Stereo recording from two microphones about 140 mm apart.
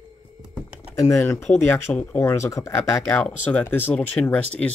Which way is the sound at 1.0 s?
20° left (ahead or behind).